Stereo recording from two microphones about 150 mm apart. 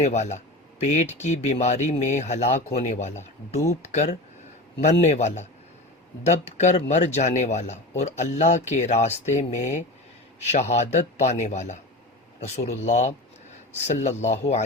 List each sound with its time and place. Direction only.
0.0 s a man's voice: 50° left (ahead or behind)